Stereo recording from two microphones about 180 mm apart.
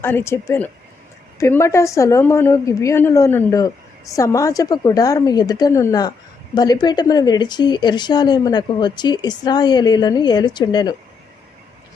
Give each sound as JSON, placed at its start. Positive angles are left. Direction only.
{"t": 0.0, "sound": "a woman's voice", "side_deg": 15}